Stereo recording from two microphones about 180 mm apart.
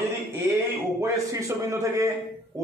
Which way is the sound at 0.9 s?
20° right (ahead or behind).